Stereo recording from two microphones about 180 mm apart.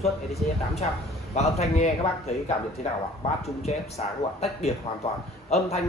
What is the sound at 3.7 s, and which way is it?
A man's voice, 35° left (ahead or behind).